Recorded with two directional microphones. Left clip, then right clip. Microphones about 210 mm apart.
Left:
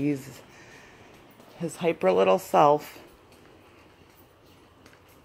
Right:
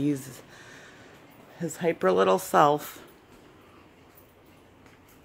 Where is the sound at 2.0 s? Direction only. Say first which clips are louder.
Left 1 dB; 10° right (ahead or behind).